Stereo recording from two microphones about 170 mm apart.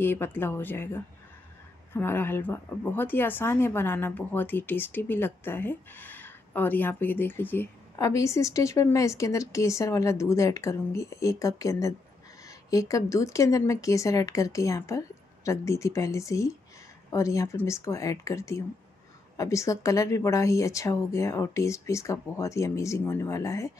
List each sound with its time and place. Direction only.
0.0 s a woman's voice: 10° left (ahead or behind)